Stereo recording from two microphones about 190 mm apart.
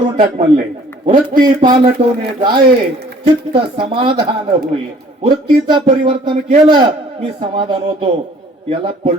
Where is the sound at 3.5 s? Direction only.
25° right (ahead or behind).